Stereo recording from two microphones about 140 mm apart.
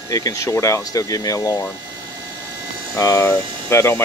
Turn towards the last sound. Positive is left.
turn(degrees=20)  # may be behind; listen again after turning